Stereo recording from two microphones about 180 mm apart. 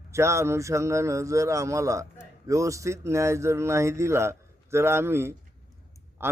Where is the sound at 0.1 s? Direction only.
15° right (ahead or behind).